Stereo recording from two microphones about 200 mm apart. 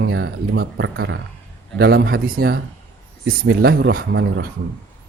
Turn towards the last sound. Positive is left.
turn(degrees=-55)  # may be behind; listen again after turning